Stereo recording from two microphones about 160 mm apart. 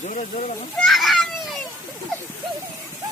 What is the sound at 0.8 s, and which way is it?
Speech, centre (ahead or behind).